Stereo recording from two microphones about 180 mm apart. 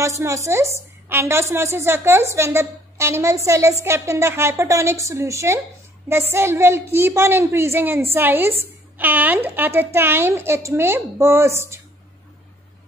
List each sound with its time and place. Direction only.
0.0 s a woman's voice: 15° right (ahead or behind)